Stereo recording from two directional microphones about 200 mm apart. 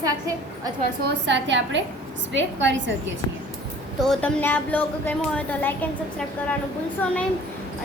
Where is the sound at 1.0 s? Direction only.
60° right (ahead or behind).